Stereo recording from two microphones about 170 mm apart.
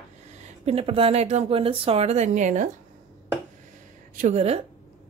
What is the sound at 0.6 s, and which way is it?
A woman's voice, 35° right (ahead or behind).